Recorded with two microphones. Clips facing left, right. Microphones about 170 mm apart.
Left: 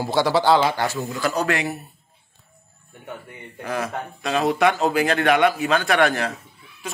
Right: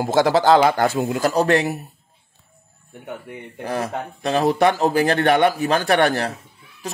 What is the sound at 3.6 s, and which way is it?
Speech, 30° right (ahead or behind).